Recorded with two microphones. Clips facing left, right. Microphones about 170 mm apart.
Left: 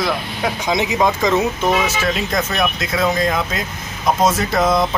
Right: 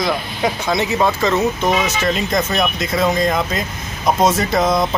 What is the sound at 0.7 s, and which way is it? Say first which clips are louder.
Speech: left 1 dB; 15° left (ahead or behind).